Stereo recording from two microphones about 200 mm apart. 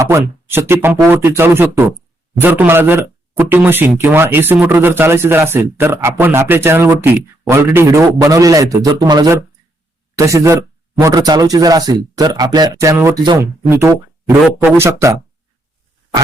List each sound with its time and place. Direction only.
0.0 s speech: 10° right (ahead or behind)